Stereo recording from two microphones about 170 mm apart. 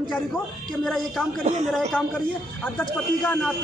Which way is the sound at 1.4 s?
40° right (ahead or behind).